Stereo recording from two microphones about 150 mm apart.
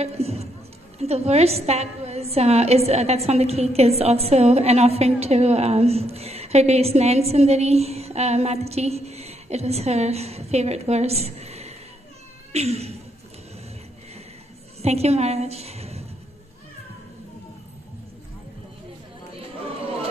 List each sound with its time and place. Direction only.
0.0 s a sound: 45° right (ahead or behind)
0.9 s a woman's voice: 45° right (ahead or behind)
14.8 s a woman's voice: 45° right (ahead or behind)